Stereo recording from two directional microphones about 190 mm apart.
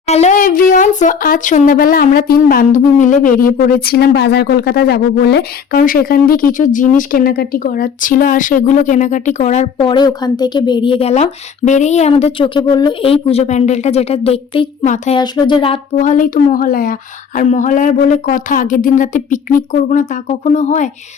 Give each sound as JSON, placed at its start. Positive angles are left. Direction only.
{"t": 0.1, "sound": "speech", "side_deg": 35}
{"t": 9.9, "sound": "a woman's voice", "side_deg": 20}
{"t": 15.2, "sound": "a woman's voice", "side_deg": 25}
{"t": 16.0, "sound": "speech", "side_deg": 45}